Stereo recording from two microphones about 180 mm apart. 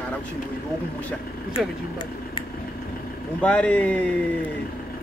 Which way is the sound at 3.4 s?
5° left (ahead or behind).